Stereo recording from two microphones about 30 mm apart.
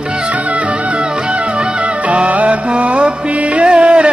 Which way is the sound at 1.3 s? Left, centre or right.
Right.